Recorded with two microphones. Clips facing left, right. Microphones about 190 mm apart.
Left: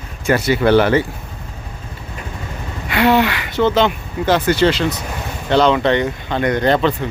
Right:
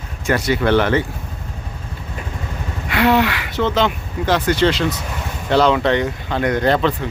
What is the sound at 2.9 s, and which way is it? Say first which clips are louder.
Speech: left 1 dB; centre (ahead or behind).